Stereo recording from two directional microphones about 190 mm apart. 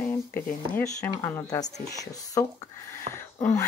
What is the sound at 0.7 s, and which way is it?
Speech, 10° left (ahead or behind).